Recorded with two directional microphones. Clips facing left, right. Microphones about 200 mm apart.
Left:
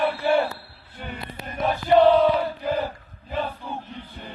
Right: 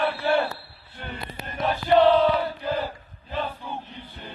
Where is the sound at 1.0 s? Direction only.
10° left (ahead or behind).